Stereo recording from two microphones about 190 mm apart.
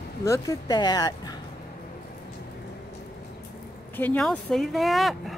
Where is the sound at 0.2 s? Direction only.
15° left (ahead or behind).